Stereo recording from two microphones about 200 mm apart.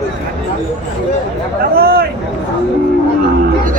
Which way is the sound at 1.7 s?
50° right (ahead or behind).